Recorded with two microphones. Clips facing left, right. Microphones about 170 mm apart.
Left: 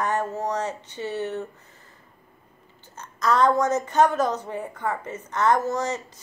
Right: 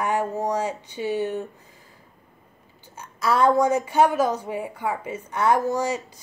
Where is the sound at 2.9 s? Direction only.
10° right (ahead or behind).